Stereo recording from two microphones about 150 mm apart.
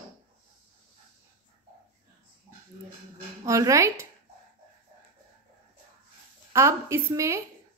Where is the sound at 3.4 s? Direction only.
20° right (ahead or behind).